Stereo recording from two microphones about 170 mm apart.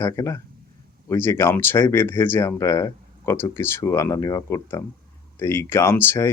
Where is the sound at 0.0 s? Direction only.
15° left (ahead or behind).